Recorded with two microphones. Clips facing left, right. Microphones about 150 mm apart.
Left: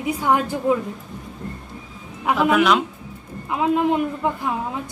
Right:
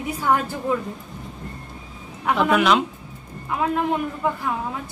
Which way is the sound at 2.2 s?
5° left (ahead or behind).